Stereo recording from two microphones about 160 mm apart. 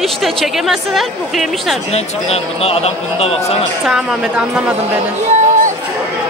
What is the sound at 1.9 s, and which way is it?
Speech, 40° left (ahead or behind).